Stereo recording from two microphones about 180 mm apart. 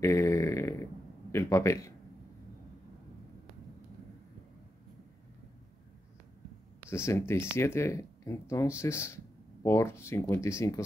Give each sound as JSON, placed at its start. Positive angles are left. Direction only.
{"t": 0.0, "sound": "a sound", "side_deg": 15}
{"t": 1.3, "sound": "a man's voice", "side_deg": 15}
{"t": 6.9, "sound": "speech", "side_deg": 15}